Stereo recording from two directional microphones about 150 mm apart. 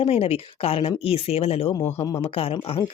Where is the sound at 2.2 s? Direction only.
40° left (ahead or behind).